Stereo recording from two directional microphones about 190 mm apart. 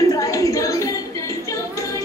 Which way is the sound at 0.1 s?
15° left (ahead or behind).